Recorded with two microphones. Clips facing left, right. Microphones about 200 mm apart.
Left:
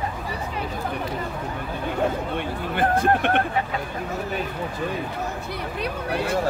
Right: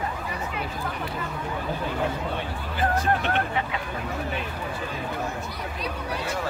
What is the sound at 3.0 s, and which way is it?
Vehicle, 55° left (ahead or behind).